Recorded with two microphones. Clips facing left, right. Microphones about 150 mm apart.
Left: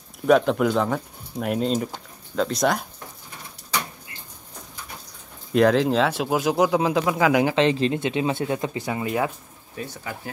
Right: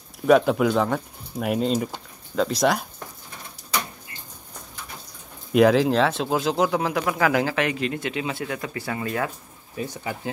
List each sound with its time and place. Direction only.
0.3 s speech: centre (ahead or behind)
5.5 s speech: 5° right (ahead or behind); by 9.3 s 15° left (ahead or behind)